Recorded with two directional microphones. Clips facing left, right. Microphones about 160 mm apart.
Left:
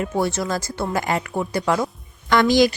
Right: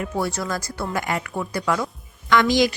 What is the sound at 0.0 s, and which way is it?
Speech, 25° left (ahead or behind).